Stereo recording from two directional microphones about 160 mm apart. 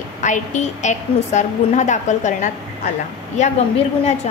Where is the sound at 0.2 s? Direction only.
50° left (ahead or behind).